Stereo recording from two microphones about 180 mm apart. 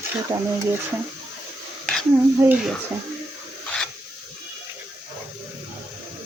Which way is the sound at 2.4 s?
10° right (ahead or behind).